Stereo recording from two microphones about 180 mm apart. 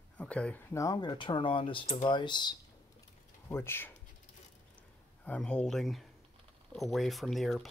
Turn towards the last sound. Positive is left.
turn(degrees=0)  # may be behind; listen again after turning